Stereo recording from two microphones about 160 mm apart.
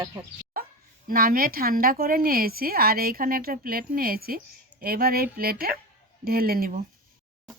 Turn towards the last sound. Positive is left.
turn(degrees=-65)  # may be behind; listen again after turning